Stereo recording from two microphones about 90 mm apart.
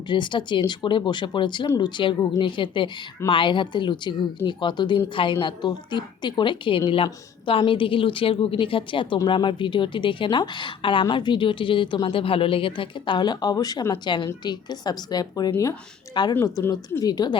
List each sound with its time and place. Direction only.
0.1 s speech: 60° left (ahead or behind)
12.0 s speech: 90° left; by 14.0 s 40° left (ahead or behind)
14.0 s a woman's voice: 60° left (ahead or behind)
16.4 s speech: 35° left (ahead or behind)
17.0 s a woman's voice: 45° left (ahead or behind)